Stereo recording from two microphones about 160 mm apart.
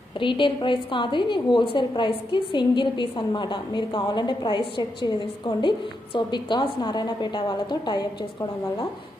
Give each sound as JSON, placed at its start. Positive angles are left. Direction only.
{"t": 0.2, "sound": "a woman's voice", "side_deg": 30}